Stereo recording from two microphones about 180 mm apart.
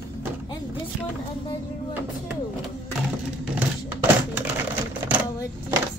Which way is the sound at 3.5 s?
10° right (ahead or behind).